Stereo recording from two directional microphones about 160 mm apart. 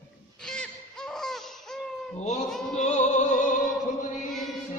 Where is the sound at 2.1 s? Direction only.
45° left (ahead or behind).